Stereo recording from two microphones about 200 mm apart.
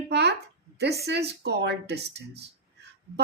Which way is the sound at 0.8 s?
55° right (ahead or behind).